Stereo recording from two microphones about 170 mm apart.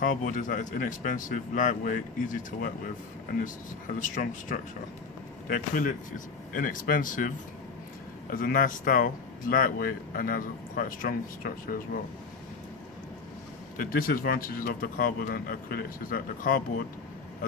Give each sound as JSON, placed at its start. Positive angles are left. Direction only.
{"t": 0.0, "sound": "a man's voice", "side_deg": 50}
{"t": 3.9, "sound": "a man's voice", "side_deg": 50}
{"t": 13.7, "sound": "speech", "side_deg": 60}